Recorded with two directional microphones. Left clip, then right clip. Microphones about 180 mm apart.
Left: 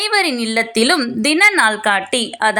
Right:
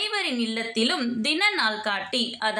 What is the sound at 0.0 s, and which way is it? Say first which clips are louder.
A woman's voice: left 10 dB; 50° left (ahead or behind).